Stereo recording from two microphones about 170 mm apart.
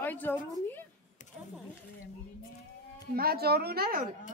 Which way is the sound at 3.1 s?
65° right (ahead or behind).